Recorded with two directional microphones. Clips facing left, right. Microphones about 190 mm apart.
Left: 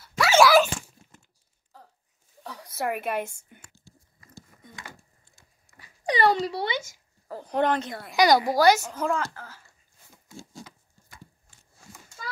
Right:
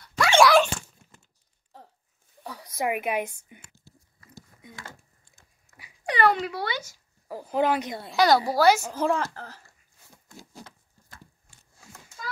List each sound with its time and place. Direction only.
0.0 s dog: 5° left (ahead or behind)
1.7 s a sound: 25° right (ahead or behind)
2.4 s speech: 10° right (ahead or behind)
6.1 s a child's voice: 30° left (ahead or behind)
7.2 s speech: 5° right (ahead or behind)
7.8 s a woman's voice: 20° right (ahead or behind)
8.2 s a woman's voice: 15° left (ahead or behind)
8.5 s speech: 5° right (ahead or behind)
8.9 s speech: 30° right (ahead or behind)
10.6 s patter: 10° left (ahead or behind)